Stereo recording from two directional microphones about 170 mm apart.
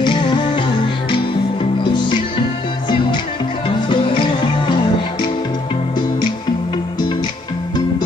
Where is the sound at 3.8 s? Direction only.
30° left (ahead or behind).